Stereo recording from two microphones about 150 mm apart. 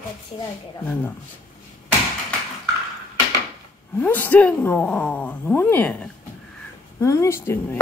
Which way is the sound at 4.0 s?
10° left (ahead or behind).